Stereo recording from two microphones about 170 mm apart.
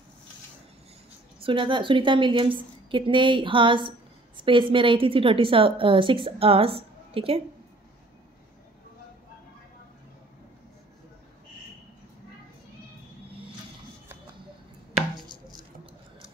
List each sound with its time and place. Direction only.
1.4 s a woman's voice: 30° right (ahead or behind)
15.1 s chopping: 25° left (ahead or behind)